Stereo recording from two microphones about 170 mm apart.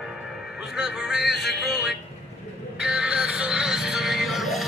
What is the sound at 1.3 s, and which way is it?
Music, 75° left (ahead or behind).